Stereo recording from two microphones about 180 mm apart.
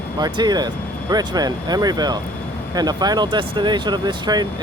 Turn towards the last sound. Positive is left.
turn(degrees=-25)  # may be behind; listen again after turning